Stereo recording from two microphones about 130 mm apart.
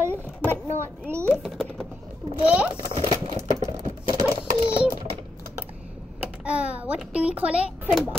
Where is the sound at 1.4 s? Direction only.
Centre (ahead or behind).